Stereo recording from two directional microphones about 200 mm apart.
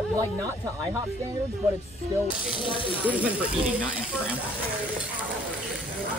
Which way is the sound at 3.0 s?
5° right (ahead or behind).